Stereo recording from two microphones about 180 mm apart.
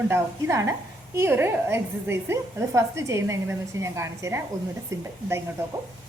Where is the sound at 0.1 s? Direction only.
15° right (ahead or behind).